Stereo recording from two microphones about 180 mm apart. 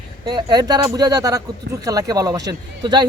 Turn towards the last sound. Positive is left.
turn(degrees=-25)  # may be behind; listen again after turning